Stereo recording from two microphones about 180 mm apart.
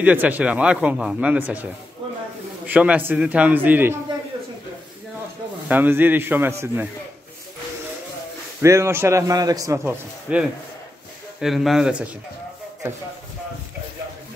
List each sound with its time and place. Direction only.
0.0 s speech: 10° right (ahead or behind)
5.7 s speech: 10° right (ahead or behind)
8.5 s speech: 15° right (ahead or behind)
10.3 s a man's voice: 5° right (ahead or behind)